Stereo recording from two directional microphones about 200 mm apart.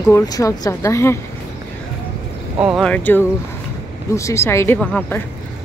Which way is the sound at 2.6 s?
5° right (ahead or behind).